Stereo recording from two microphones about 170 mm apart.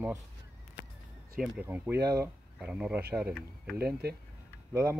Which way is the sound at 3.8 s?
70° right (ahead or behind).